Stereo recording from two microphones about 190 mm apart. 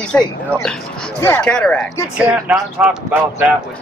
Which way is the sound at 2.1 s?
5° right (ahead or behind).